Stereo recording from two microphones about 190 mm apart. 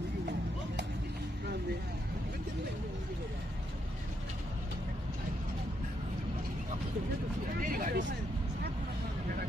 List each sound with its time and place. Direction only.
7.6 s vehicle: 45° right (ahead or behind)